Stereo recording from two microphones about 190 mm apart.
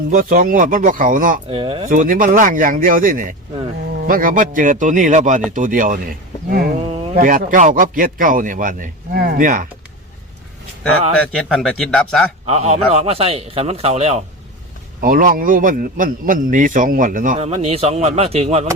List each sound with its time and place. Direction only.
0.1 s speech: 45° right (ahead or behind)
1.5 s speech: 30° right (ahead or behind)
1.9 s speech: 45° right (ahead or behind)
6.7 s a sound: 35° right (ahead or behind)
7.2 s speech: 45° right (ahead or behind)
11.3 s speech: centre (ahead or behind)
12.5 s a man's voice: 35° right (ahead or behind)
15.0 s speech: 50° right (ahead or behind)
17.3 s a man's voice: 30° right (ahead or behind)